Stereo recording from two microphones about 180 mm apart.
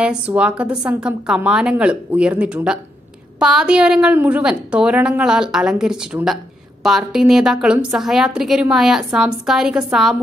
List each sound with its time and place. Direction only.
0.3 s a woman's voice: 5° right (ahead or behind)